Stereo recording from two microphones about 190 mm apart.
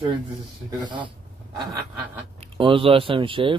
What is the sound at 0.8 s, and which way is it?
Speech, 25° right (ahead or behind).